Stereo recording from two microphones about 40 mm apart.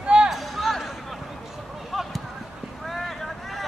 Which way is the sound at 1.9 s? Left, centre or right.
Centre.